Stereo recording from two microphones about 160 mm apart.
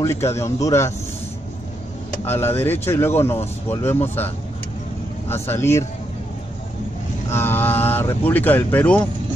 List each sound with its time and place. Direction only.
0.0 s speech: 15° left (ahead or behind)
2.2 s speech: 15° left (ahead or behind)
5.3 s speech: 15° left (ahead or behind)
7.2 s speech: 15° left (ahead or behind)